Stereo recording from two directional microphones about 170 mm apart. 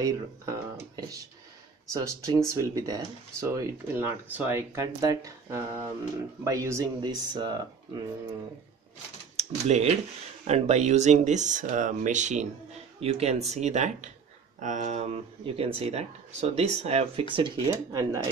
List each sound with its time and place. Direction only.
0.0 s speech: 20° right (ahead or behind)
9.4 s speech: 40° right (ahead or behind)
17.3 s speech: 25° right (ahead or behind)